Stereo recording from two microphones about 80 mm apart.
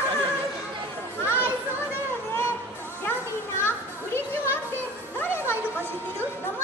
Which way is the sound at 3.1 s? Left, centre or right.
Left.